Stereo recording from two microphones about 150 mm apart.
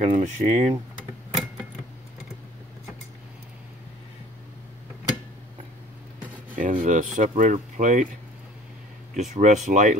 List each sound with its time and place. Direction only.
0.0 s speech: 50° right (ahead or behind)
6.5 s speech: 60° right (ahead or behind)
9.1 s speech: 55° right (ahead or behind)